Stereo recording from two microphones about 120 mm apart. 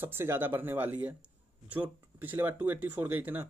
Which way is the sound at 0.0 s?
20° right (ahead or behind).